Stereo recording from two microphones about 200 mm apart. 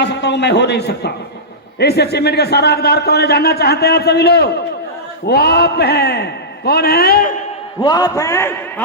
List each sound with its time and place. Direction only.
0.0 s a man's voice: 60° left (ahead or behind)
7.8 s a man's voice: 20° left (ahead or behind)